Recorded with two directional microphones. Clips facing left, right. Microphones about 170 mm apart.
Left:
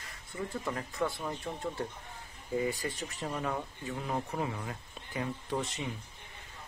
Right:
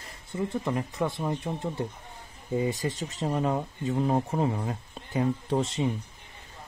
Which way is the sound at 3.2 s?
35° right (ahead or behind).